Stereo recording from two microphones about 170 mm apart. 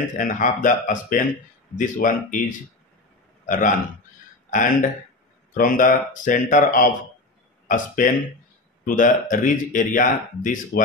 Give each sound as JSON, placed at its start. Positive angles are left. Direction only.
{"t": 0.1, "sound": "speech", "side_deg": 50}
{"t": 3.4, "sound": "a man's voice", "side_deg": 50}